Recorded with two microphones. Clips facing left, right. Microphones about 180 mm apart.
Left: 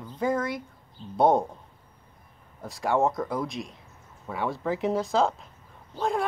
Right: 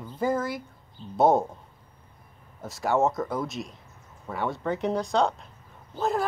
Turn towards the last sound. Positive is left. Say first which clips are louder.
# right 1 dB
turn(degrees=-5)  # may be behind; listen again after turning